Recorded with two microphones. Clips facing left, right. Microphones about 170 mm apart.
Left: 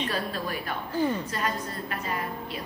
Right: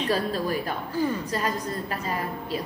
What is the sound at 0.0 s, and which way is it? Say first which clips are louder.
Speech: right 5 dB; 40° right (ahead or behind).